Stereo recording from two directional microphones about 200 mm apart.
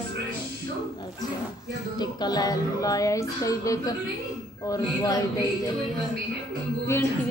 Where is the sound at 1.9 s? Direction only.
20° left (ahead or behind).